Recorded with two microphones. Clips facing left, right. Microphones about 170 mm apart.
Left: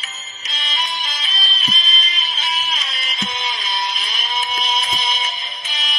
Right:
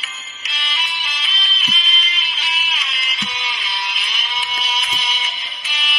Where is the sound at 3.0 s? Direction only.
45° left (ahead or behind).